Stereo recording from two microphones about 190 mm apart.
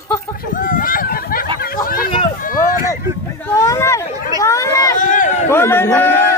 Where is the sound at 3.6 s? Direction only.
15° left (ahead or behind).